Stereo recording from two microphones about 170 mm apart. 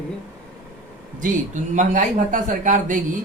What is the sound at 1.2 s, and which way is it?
A man's voice, 45° right (ahead or behind).